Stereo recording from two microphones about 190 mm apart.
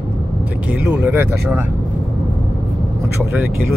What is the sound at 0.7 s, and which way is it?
Speech, 10° right (ahead or behind).